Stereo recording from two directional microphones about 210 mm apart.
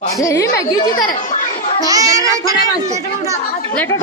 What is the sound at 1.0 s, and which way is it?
Speech, 40° left (ahead or behind).